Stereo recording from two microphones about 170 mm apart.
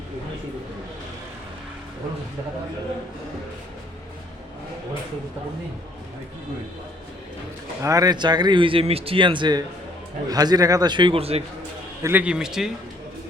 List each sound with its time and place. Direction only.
7.8 s speech: 20° right (ahead or behind); by 11.4 s 35° right (ahead or behind)
12.0 s speech: 10° right (ahead or behind)